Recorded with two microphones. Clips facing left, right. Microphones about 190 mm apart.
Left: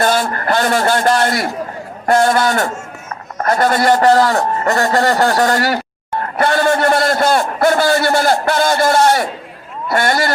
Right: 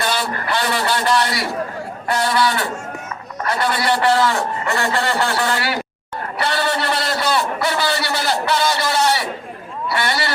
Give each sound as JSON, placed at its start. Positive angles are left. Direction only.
{"t": 0.0, "sound": "a man's voice", "side_deg": 50}